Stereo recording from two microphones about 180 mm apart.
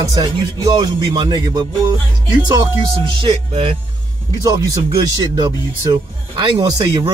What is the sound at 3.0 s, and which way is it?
Speech, 30° right (ahead or behind).